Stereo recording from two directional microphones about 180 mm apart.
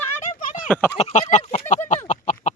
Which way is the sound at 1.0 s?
35° left (ahead or behind).